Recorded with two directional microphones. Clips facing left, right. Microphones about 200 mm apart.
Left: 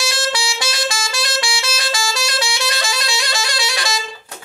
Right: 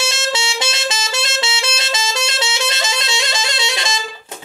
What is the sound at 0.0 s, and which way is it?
Music, 25° right (ahead or behind).